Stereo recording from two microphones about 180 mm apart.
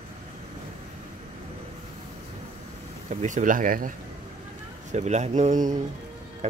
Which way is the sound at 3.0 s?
45° right (ahead or behind).